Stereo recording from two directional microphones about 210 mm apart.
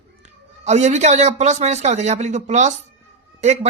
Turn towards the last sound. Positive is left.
turn(degrees=-30)  # may be behind; listen again after turning